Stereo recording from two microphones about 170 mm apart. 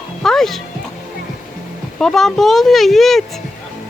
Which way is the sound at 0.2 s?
Centre (ahead or behind).